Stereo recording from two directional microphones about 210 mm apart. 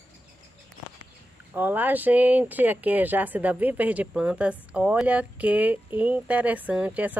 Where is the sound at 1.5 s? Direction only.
10° right (ahead or behind).